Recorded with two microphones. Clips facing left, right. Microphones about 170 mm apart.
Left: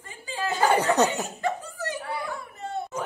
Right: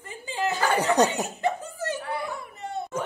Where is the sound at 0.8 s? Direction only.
15° right (ahead or behind).